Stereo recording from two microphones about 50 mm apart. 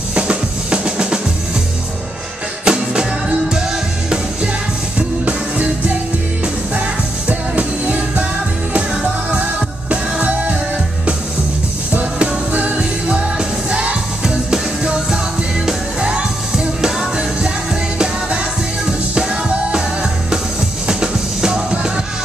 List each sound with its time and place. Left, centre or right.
0.1 s drum kit: centre
2.6 s music: centre
7.2 s music: right
9.8 s music: right
12.0 s music: right
17.9 s music: centre
19.7 s music: centre